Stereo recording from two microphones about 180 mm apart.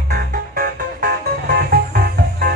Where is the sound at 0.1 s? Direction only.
55° right (ahead or behind).